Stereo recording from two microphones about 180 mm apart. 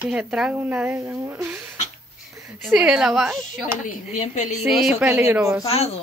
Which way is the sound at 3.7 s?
45° left (ahead or behind).